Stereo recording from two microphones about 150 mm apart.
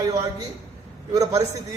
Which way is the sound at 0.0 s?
25° right (ahead or behind).